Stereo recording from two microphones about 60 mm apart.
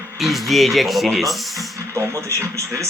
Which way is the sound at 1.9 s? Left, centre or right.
Right.